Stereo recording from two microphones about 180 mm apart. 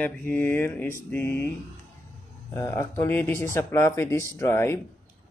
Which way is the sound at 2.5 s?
15° left (ahead or behind).